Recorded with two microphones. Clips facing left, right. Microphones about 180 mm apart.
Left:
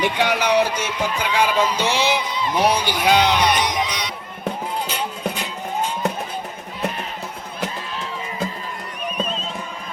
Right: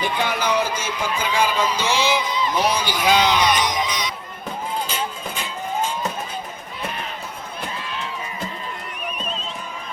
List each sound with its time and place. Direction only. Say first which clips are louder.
0.0 s speech: left 3 dB; 70° left (ahead or behind)
4.9 s music: left 2 dB; 65° left (ahead or behind)